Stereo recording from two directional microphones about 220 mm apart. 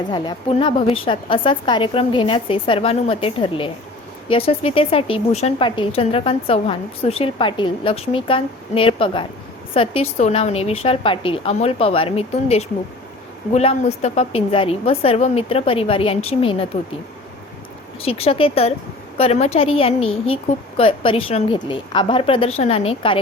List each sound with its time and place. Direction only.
0.1 s speech: 20° left (ahead or behind)
18.0 s speech: 25° left (ahead or behind)